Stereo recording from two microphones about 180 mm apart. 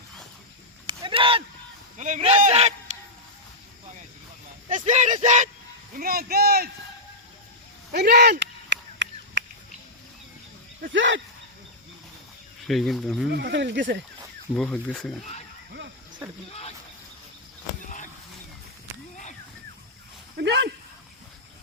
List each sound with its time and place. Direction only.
0.9 s a sound: 30° right (ahead or behind)
2.0 s speech: 40° right (ahead or behind)
4.7 s speech: 40° right (ahead or behind)
6.0 s speech: 55° right (ahead or behind)
7.9 s a sound: 65° right (ahead or behind); by 9.4 s 90° right
10.9 s speech: 90° right
12.6 s speech: centre (ahead or behind)
13.3 s speech: 75° right (ahead or behind)
14.5 s speech: 5° left (ahead or behind)
20.3 s speech: 70° right (ahead or behind)